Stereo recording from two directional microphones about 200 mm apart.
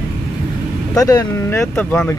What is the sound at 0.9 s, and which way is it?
Speech, 15° left (ahead or behind).